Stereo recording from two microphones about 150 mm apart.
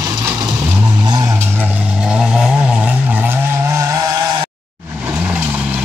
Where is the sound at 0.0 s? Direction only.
25° right (ahead or behind).